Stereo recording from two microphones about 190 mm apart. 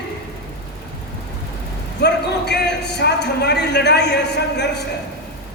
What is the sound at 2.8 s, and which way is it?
A man's voice, 60° left (ahead or behind).